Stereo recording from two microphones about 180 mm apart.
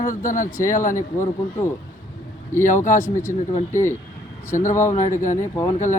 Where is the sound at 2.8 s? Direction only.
15° left (ahead or behind).